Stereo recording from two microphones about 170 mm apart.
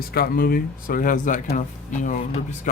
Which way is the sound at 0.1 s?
60° left (ahead or behind).